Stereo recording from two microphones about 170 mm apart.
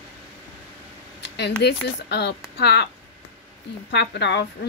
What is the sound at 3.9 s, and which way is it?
Speech, 85° left.